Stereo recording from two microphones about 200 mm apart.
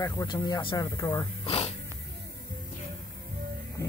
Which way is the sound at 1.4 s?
30° left (ahead or behind).